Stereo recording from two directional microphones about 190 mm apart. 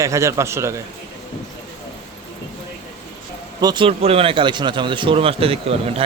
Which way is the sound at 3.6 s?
25° right (ahead or behind).